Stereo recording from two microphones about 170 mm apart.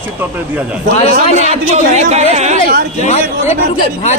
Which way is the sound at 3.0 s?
40° left (ahead or behind).